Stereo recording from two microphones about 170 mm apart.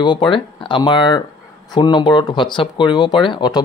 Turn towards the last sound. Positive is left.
turn(degrees=25)  # may be behind; listen again after turning